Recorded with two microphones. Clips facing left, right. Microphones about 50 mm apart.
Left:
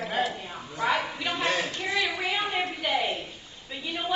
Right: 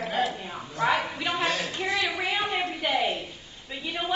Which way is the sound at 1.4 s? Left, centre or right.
Left.